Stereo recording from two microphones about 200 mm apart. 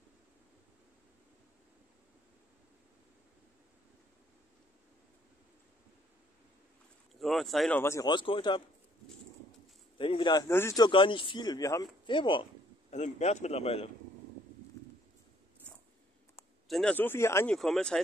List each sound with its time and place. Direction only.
7.2 s speech: centre (ahead or behind)
7.8 s a man's voice: 15° left (ahead or behind)
9.9 s a man's voice: 25° left (ahead or behind)
16.6 s speech: centre (ahead or behind)
17.6 s speech: centre (ahead or behind)